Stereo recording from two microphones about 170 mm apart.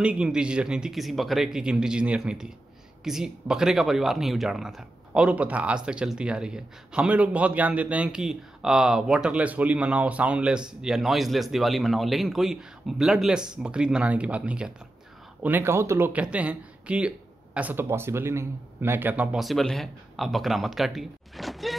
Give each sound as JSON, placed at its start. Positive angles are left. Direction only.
{"t": 0.0, "sound": "a man's voice", "side_deg": -5}